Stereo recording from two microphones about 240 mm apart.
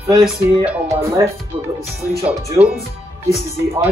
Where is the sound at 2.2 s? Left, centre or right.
Centre.